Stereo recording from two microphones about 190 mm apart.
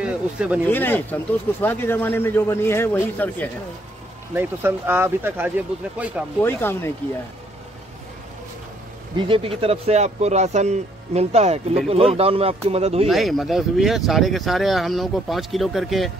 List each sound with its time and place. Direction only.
0.0 s speech: 5° right (ahead or behind)
0.7 s speech: 10° left (ahead or behind)
4.3 s speech: 10° right (ahead or behind)
6.4 s speech: 10° left (ahead or behind)
9.1 s speech: 25° right (ahead or behind)
13.1 s speech: centre (ahead or behind)